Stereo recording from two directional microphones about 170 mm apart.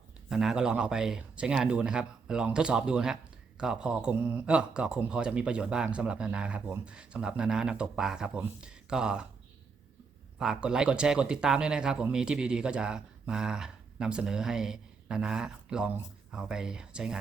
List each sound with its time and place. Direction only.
0.3 s speech: 5° right (ahead or behind)
10.3 s speech: 5° right (ahead or behind)